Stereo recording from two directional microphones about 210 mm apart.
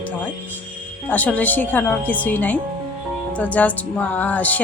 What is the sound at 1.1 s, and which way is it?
Speech, 10° left (ahead or behind).